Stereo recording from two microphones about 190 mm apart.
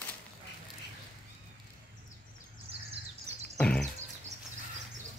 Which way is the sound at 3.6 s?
5° left (ahead or behind).